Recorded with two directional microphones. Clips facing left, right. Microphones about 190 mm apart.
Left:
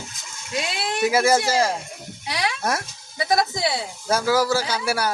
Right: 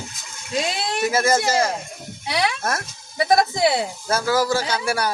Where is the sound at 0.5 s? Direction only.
40° right (ahead or behind).